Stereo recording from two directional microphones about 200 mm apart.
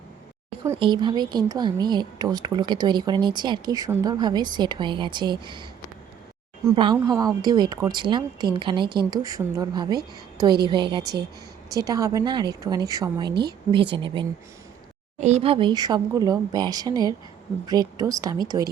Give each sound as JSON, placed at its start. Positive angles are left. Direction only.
{"t": 0.8, "sound": "a woman's voice", "side_deg": -25}
{"t": 6.9, "sound": "a woman's voice", "side_deg": -20}